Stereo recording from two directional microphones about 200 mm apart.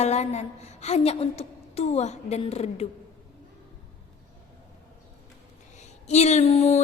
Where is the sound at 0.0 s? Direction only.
35° left (ahead or behind).